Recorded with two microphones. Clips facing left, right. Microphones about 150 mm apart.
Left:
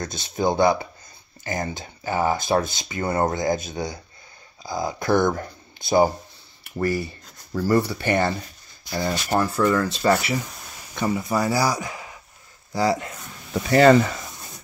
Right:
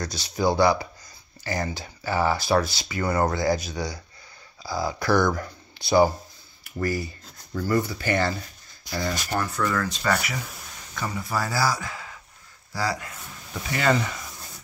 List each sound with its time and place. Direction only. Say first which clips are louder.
0.2 s speech: left 1 dB; 20° left (ahead or behind)
7.9 s speech: left 3 dB; 25° left (ahead or behind)
13.5 s speech: left 9 dB; 40° left (ahead or behind)